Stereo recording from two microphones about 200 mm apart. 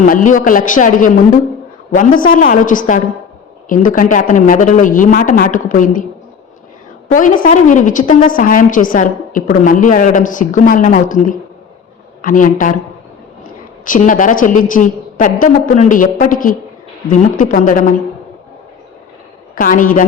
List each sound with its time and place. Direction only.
0.0 s a woman's voice: 40° left (ahead or behind)
7.1 s a woman's voice: 40° left (ahead or behind)
13.8 s a woman's voice: 40° left (ahead or behind)
19.5 s speech: 45° left (ahead or behind)